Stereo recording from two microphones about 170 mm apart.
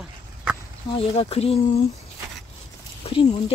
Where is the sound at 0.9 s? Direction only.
35° left (ahead or behind).